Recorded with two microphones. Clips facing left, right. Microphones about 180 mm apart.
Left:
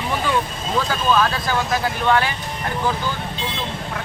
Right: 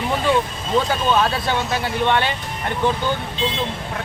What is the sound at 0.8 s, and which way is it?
Speech, 25° right (ahead or behind).